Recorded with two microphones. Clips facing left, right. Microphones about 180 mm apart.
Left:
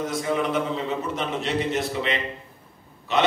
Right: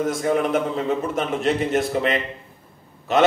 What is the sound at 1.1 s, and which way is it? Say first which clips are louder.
A man's voice: right 4 dB; 50° right (ahead or behind).